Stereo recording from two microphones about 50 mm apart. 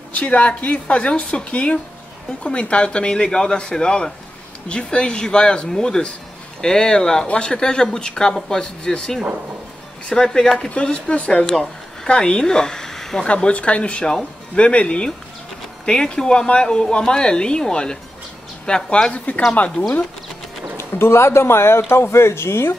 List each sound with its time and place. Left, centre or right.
0.1 s speech: left
10.7 s speech: left
11.5 s a sound: centre
12.1 s speech: centre
13.3 s speech: left
19.1 s speech: left
20.7 s speech: left